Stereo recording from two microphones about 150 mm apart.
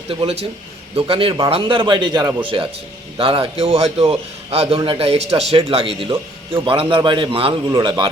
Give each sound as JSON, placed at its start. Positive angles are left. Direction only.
{"t": 0.1, "sound": "a man's voice", "side_deg": -40}